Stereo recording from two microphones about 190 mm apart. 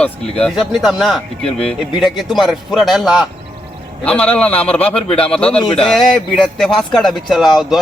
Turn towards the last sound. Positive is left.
turn(degrees=0)  # may be behind; listen again after turning